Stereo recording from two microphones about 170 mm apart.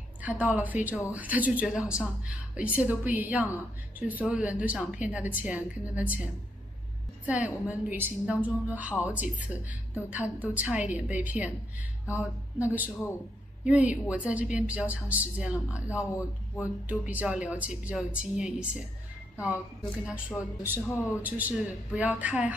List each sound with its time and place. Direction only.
0.2 s speech: 10° right (ahead or behind)
7.2 s speech: 10° right (ahead or behind)
13.7 s speech: 5° right (ahead or behind)
20.1 s speech: 10° right (ahead or behind)